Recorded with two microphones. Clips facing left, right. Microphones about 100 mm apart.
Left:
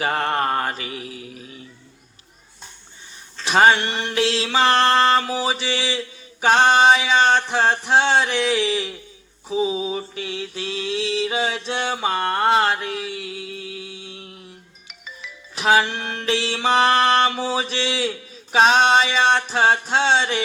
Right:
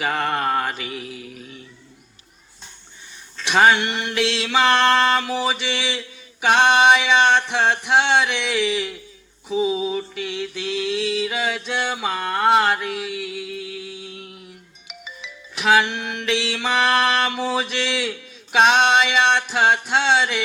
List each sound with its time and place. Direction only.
0.0 s mantra: 40° left (ahead or behind)
3.3 s music: 40° left (ahead or behind)
14.1 s a sound: 35° left (ahead or behind)
15.5 s music: 35° left (ahead or behind)